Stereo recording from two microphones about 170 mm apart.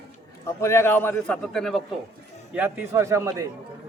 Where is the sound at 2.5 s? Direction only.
15° right (ahead or behind).